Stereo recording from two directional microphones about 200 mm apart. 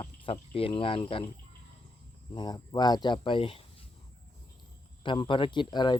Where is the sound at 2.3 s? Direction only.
20° left (ahead or behind).